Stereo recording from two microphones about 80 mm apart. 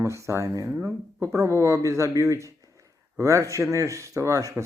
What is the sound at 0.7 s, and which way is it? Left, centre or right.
Speech, right.